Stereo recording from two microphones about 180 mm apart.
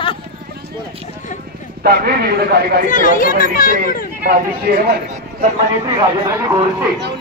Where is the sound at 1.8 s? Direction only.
60° right (ahead or behind).